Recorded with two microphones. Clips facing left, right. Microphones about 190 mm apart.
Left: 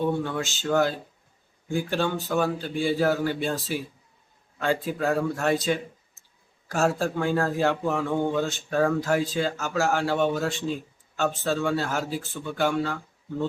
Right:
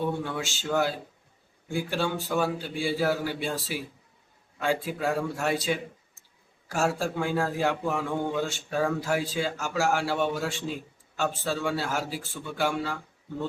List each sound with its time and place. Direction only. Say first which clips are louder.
0.2 s a man's voice: left 3 dB; 10° right (ahead or behind)